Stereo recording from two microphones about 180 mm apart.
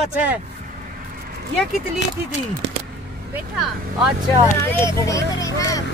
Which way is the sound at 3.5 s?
Centre (ahead or behind).